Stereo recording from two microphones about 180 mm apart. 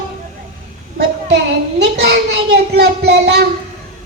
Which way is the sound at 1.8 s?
70° right (ahead or behind).